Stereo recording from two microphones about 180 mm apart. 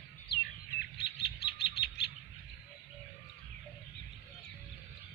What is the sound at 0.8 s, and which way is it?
Chirp, 65° left (ahead or behind).